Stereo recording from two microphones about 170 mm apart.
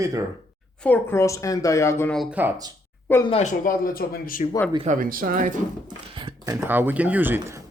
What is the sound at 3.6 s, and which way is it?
Speech, 55° left (ahead or behind).